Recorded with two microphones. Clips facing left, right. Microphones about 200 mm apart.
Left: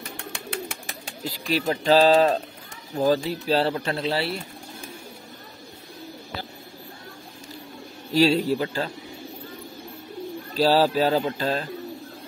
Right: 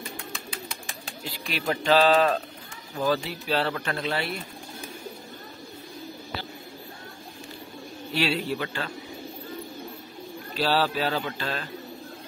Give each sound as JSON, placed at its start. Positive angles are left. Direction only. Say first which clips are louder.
{"t": 0.0, "sound": "bird", "louder": "left 1 dB", "side_deg": 70}
{"t": 1.2, "sound": "speech", "louder": "left 5 dB", "side_deg": 40}
{"t": 8.1, "sound": "speech", "louder": "left 7 dB", "side_deg": 40}
{"t": 10.5, "sound": "speech", "louder": "left 5 dB", "side_deg": 40}